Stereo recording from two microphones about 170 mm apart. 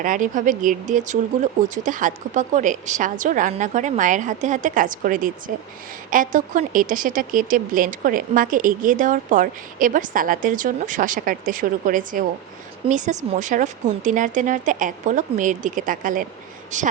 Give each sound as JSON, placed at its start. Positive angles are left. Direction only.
{"t": 0.0, "sound": "speech", "side_deg": -50}